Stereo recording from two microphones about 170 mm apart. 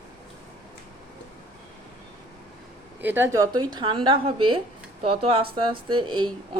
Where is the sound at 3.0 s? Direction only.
10° right (ahead or behind); by 6.6 s 30° right (ahead or behind).